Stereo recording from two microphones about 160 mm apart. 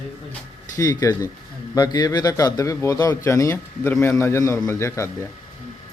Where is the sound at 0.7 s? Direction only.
20° left (ahead or behind).